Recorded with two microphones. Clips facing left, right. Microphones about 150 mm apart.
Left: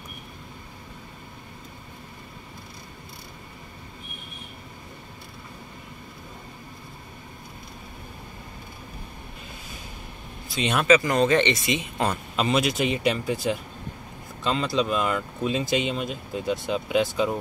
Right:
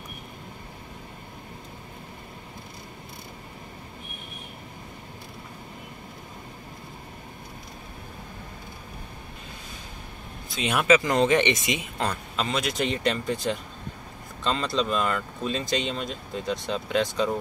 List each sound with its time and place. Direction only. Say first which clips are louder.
10.5 s speech: left 1 dB; 5° right (ahead or behind)
11.1 s speech: left 1 dB; 15° right (ahead or behind)
12.0 s speech: left 3 dB; 10° left (ahead or behind)